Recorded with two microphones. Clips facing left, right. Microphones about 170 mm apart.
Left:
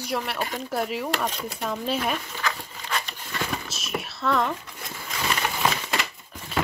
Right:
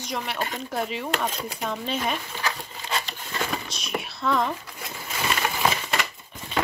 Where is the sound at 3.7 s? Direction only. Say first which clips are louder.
Even; 5° left (ahead or behind).